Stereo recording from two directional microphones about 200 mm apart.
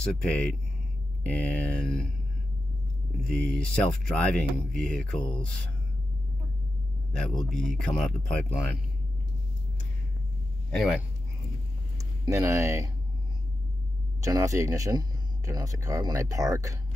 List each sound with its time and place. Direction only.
0.0 s speech: 5° left (ahead or behind)
3.3 s speech: 5° left (ahead or behind)
7.1 s speech: centre (ahead or behind)
10.7 s speech: centre (ahead or behind)
12.0 s speech: 15° right (ahead or behind)
14.2 s speech: 15° right (ahead or behind)